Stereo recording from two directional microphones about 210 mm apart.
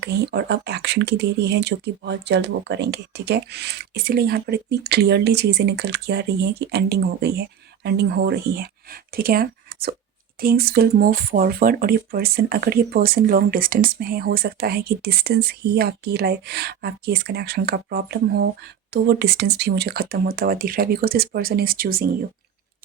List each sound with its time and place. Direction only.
0.0 s speech: 50° right (ahead or behind)